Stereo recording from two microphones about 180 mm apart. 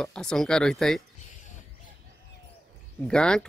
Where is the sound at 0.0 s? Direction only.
5° left (ahead or behind).